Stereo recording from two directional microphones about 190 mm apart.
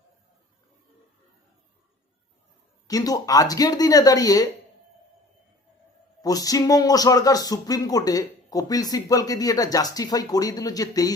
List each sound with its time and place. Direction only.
2.8 s speech: 20° left (ahead or behind)
6.2 s speech: 20° left (ahead or behind)